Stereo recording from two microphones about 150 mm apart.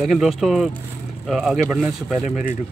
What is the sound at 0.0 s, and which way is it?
Speech, centre (ahead or behind).